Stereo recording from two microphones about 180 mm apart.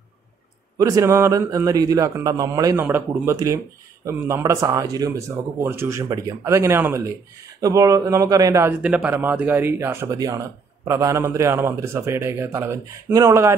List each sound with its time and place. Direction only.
0.7 s a man's voice: 20° right (ahead or behind)